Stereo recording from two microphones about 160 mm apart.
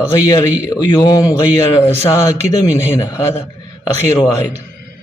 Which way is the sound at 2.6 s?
20° left (ahead or behind).